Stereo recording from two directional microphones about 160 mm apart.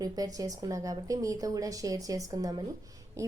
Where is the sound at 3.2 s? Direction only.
20° right (ahead or behind).